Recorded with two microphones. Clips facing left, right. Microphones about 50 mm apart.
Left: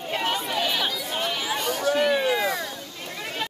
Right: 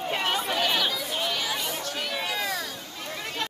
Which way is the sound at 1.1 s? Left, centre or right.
Centre.